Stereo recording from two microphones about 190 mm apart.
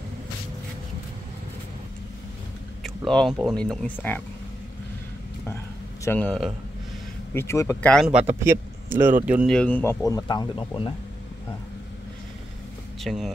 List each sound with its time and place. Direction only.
3.1 s a man's voice: 5° left (ahead or behind)
6.0 s a man's voice: 5° left (ahead or behind)
7.3 s speech: 15° left (ahead or behind)
7.9 s speech: centre (ahead or behind)
9.6 s speech: 10° left (ahead or behind); by 11.0 s 25° left (ahead or behind)
13.0 s speech: centre (ahead or behind)